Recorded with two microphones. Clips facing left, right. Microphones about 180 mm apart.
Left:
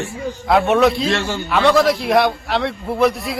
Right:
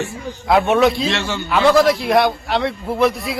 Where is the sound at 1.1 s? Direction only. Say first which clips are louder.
Left 2 dB; 45° left (ahead or behind).